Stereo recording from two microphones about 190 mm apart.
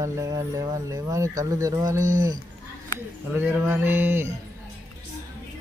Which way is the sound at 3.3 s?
10° right (ahead or behind).